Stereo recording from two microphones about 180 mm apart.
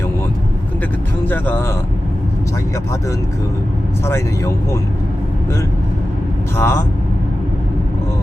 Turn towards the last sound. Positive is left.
turn(degrees=15)  # may be behind; listen again after turning